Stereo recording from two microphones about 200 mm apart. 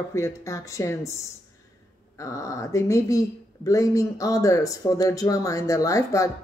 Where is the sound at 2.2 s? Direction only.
15° left (ahead or behind).